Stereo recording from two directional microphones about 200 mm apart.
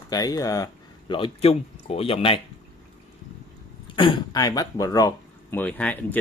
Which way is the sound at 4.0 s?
25° left (ahead or behind).